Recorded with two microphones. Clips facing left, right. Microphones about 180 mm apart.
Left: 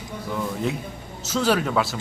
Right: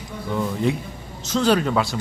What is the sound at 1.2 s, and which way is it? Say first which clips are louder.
Speech: right 3 dB; 5° left (ahead or behind).